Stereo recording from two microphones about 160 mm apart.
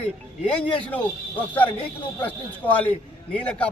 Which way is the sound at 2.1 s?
10° left (ahead or behind).